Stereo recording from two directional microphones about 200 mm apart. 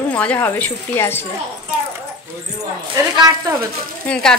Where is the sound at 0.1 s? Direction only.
5° left (ahead or behind).